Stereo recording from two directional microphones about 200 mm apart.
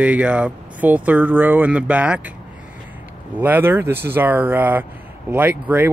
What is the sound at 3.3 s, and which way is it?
Speech, 10° right (ahead or behind).